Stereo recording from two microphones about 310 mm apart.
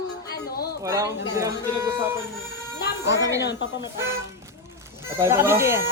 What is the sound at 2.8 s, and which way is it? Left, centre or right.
Music, left.